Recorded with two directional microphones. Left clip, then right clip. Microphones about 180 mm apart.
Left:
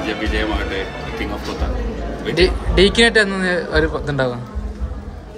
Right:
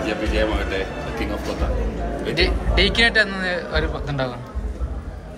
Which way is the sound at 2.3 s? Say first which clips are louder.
Left 5 dB; 30° left (ahead or behind).